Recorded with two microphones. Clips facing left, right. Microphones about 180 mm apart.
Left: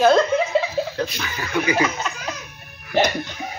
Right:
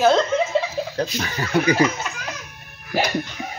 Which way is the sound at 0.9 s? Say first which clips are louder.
Right 2 dB; 35° right (ahead or behind).